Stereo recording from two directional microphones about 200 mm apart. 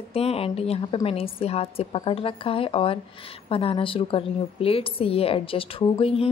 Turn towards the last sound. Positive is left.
turn(degrees=30)  # may be behind; listen again after turning